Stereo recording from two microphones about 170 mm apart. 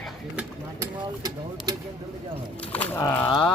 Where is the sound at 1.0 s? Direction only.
25° right (ahead or behind).